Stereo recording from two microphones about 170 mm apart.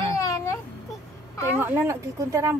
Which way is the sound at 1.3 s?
15° left (ahead or behind).